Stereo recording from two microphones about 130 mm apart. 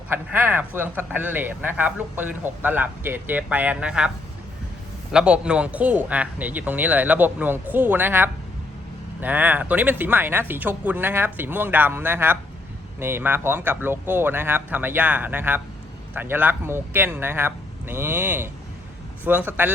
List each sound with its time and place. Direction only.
0.1 s speech: 15° right (ahead or behind)
5.1 s speech: 10° right (ahead or behind)